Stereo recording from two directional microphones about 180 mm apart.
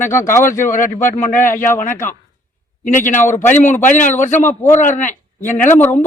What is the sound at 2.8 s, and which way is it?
Speech, 45° left (ahead or behind).